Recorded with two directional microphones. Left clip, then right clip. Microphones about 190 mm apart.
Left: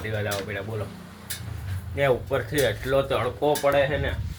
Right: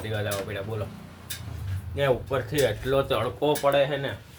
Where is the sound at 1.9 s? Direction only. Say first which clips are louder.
Left 2 dB; 5° right (ahead or behind).